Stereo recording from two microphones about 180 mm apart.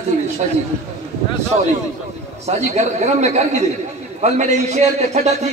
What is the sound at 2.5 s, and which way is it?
A man's voice, 40° right (ahead or behind).